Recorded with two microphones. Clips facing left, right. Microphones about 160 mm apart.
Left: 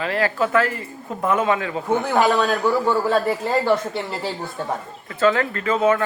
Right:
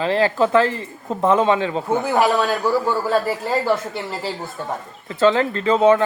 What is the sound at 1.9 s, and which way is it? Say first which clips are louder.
Speech: even; 5° right (ahead or behind).